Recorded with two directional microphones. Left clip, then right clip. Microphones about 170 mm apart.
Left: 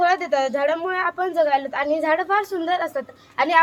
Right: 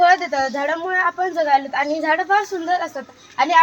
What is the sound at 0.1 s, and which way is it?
A woman's voice, 35° left (ahead or behind).